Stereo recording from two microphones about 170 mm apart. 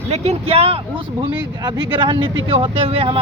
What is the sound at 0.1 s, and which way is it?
Speech, 35° right (ahead or behind).